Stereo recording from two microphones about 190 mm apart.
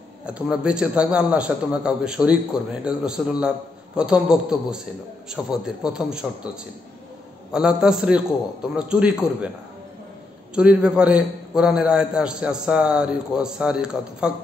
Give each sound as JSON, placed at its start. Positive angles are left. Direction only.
{"t": 0.3, "sound": "a man's voice", "side_deg": -5}
{"t": 7.5, "sound": "a man's voice", "side_deg": -5}
{"t": 10.5, "sound": "a man's voice", "side_deg": -5}